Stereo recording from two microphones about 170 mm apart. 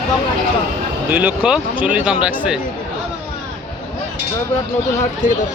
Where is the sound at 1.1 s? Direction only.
10° right (ahead or behind).